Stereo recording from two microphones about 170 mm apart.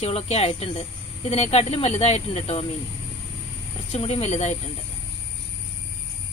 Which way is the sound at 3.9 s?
35° left (ahead or behind).